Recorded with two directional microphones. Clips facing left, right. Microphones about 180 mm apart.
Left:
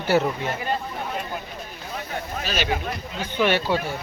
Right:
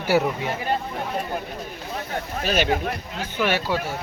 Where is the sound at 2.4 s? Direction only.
50° right (ahead or behind).